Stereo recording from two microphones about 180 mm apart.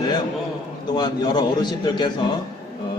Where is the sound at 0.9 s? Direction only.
25° left (ahead or behind).